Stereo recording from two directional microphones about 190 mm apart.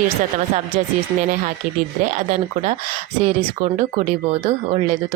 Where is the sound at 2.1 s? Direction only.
40° right (ahead or behind).